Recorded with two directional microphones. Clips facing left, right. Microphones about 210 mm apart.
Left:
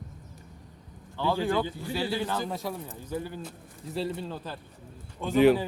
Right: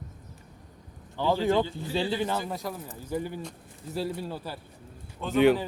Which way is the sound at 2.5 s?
Centre (ahead or behind).